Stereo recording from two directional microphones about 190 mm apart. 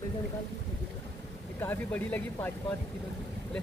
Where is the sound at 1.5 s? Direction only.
10° left (ahead or behind).